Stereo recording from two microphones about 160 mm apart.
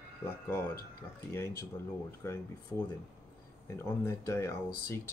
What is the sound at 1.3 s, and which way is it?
Speech, 15° left (ahead or behind).